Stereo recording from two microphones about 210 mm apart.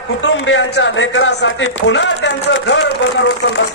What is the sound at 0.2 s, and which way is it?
A man's voice, 65° left (ahead or behind).